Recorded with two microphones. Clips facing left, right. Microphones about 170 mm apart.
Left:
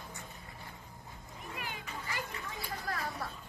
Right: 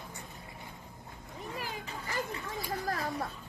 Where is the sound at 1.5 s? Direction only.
35° right (ahead or behind).